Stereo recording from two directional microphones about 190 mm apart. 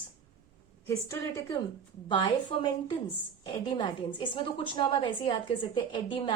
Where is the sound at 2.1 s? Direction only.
25° left (ahead or behind).